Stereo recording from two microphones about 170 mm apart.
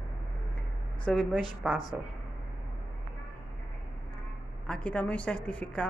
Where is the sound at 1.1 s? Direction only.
Centre (ahead or behind).